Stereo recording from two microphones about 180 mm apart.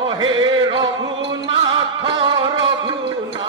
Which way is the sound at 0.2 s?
25° right (ahead or behind).